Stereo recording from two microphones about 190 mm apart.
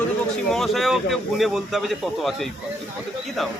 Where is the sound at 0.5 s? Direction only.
Centre (ahead or behind).